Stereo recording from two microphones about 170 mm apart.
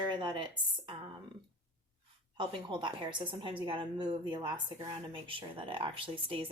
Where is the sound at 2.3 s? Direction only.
30° right (ahead or behind).